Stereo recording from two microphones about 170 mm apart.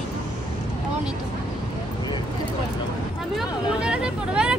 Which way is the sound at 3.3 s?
5° right (ahead or behind).